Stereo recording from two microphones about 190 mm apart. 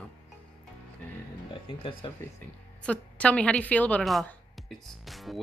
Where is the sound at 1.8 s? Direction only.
25° left (ahead or behind).